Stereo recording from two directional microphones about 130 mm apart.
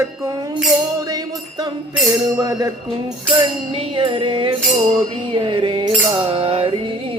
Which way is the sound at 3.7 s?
40° right (ahead or behind).